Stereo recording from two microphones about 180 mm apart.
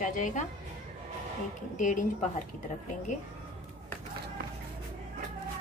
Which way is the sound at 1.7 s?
45° left (ahead or behind).